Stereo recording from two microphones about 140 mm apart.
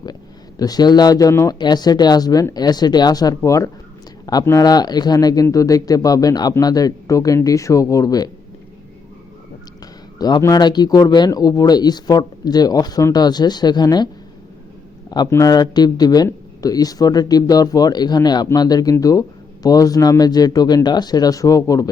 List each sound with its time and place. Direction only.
0.6 s speech: 30° left (ahead or behind)
10.2 s speech: 30° left (ahead or behind)
15.3 s speech: 25° left (ahead or behind)